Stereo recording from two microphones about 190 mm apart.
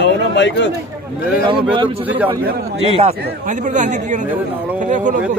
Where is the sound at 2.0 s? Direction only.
10° right (ahead or behind).